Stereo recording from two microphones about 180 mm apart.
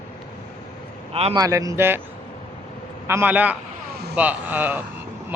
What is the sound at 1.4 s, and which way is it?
Speech, 20° right (ahead or behind).